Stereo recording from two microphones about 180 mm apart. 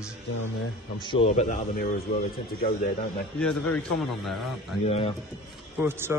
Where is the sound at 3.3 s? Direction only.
5° left (ahead or behind).